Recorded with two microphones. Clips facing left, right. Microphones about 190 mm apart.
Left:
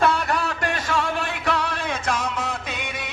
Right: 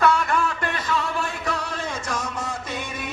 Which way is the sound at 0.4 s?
85° left.